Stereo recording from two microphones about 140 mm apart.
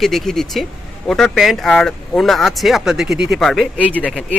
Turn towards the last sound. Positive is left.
turn(degrees=10)  # may be behind; listen again after turning